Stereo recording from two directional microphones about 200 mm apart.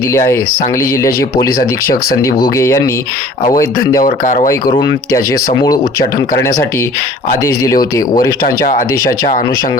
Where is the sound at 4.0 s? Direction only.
45° left (ahead or behind).